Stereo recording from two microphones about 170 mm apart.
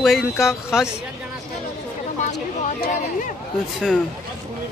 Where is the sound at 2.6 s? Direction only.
50° left (ahead or behind).